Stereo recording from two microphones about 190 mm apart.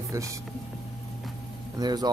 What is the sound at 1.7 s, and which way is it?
Speech, 20° right (ahead or behind).